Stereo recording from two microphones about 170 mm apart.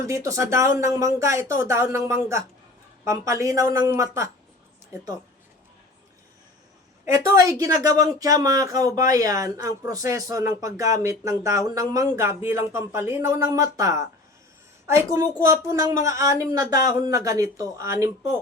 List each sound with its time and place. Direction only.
0.1 s speech: 20° right (ahead or behind)
7.0 s a woman's voice: 15° right (ahead or behind)